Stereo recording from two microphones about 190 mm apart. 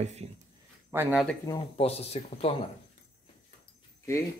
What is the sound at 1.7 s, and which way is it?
Speech, 30° left (ahead or behind).